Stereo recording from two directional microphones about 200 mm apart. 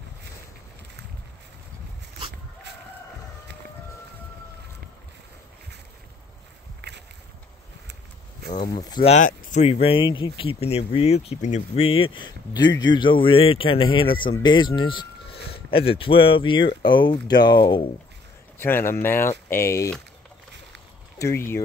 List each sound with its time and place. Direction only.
6.8 s a sound: 55° right (ahead or behind)
8.6 s speech: 20° left (ahead or behind)
9.1 s speech: 35° left (ahead or behind)
18.6 s speech: 10° left (ahead or behind)
21.2 s speech: 15° left (ahead or behind)